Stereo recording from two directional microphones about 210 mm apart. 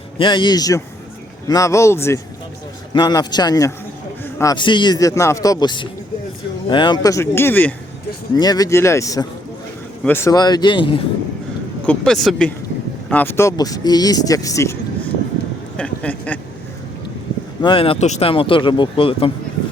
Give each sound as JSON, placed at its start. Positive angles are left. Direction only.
{"t": 0.2, "sound": "speech", "side_deg": 20}
{"t": 11.9, "sound": "speech", "side_deg": 0}
{"t": 15.8, "sound": "a sound", "side_deg": 5}
{"t": 17.6, "sound": "speech", "side_deg": 25}